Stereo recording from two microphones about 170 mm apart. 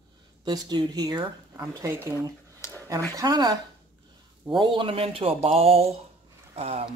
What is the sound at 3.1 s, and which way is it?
Speech, 25° right (ahead or behind).